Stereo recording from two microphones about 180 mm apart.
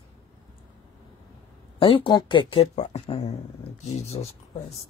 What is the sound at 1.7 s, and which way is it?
Speech, 30° left (ahead or behind).